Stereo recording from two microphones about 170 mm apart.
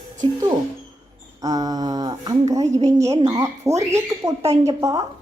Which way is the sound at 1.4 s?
20° right (ahead or behind).